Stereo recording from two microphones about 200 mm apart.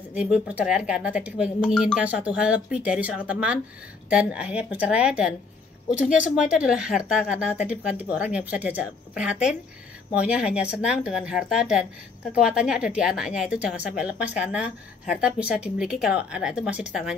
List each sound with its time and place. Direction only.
0.1 s a woman's voice: 5° right (ahead or behind)
5.9 s speech: 35° left (ahead or behind)
6.5 s a woman's voice: 5° right (ahead or behind)